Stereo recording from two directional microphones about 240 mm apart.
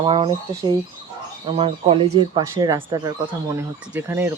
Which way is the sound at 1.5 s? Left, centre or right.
Right.